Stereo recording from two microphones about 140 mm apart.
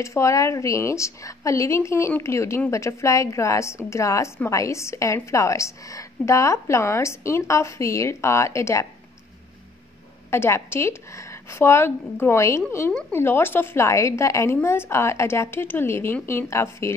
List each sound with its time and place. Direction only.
0.0 s a woman's voice: 20° left (ahead or behind)
10.3 s a woman's voice: 15° left (ahead or behind)